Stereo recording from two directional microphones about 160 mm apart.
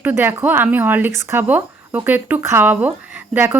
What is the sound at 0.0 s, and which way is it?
Speech, 15° right (ahead or behind).